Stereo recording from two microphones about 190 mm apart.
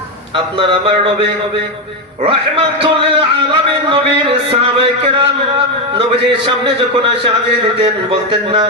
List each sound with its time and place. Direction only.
0.3 s a man's voice: 25° right (ahead or behind)
2.2 s a man's voice: 25° right (ahead or behind)